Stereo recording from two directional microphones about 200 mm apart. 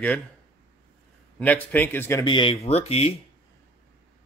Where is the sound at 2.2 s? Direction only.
25° left (ahead or behind).